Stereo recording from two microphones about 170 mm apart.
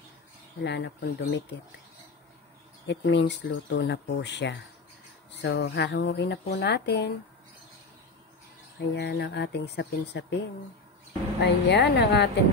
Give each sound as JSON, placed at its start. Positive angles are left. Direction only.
{"t": 0.7, "sound": "speech", "side_deg": 90}
{"t": 2.9, "sound": "speech", "side_deg": 90}
{"t": 8.7, "sound": "speech", "side_deg": 85}
{"t": 11.4, "sound": "speech", "side_deg": 80}